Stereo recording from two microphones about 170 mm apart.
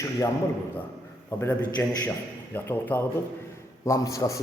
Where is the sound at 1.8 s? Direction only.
10° left (ahead or behind).